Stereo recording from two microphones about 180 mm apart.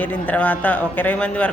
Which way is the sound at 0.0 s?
10° left (ahead or behind).